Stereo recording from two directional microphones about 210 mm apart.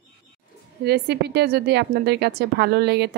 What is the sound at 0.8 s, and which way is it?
A woman's voice, 50° right (ahead or behind).